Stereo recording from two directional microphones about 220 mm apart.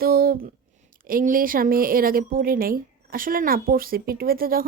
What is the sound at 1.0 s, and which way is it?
A woman's voice, 40° right (ahead or behind).